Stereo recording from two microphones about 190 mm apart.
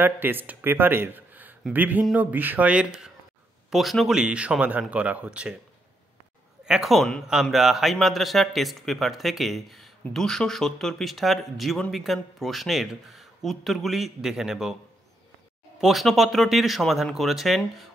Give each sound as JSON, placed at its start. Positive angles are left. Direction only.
{"t": 0.0, "sound": "a man's voice", "side_deg": -10}
{"t": 6.6, "sound": "a man's voice", "side_deg": 0}
{"t": 15.8, "sound": "a man's voice", "side_deg": 0}